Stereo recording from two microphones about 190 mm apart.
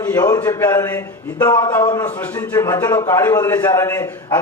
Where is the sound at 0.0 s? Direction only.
15° left (ahead or behind).